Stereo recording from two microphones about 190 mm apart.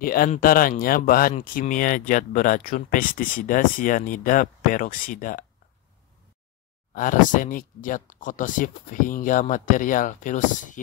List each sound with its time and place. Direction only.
0.0 s speech: 50° left (ahead or behind)
6.9 s speech: 45° left (ahead or behind)